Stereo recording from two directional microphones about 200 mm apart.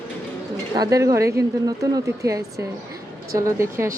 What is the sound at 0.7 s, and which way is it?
A woman's voice, 20° right (ahead or behind).